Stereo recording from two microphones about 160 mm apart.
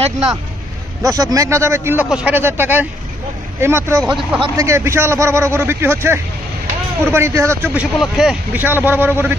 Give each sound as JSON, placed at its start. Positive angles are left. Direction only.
{"t": 1.0, "sound": "a man's voice", "side_deg": -20}
{"t": 4.0, "sound": "speech", "side_deg": -5}
{"t": 4.6, "sound": "speech", "side_deg": -15}
{"t": 8.6, "sound": "speech", "side_deg": -15}